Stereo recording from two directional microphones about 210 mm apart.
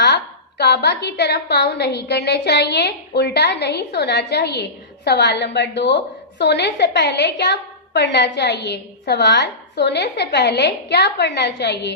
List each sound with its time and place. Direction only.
0.6 s a woman's voice: 55° left (ahead or behind)